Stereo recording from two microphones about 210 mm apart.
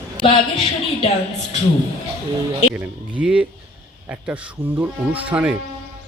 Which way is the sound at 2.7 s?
5° right (ahead or behind).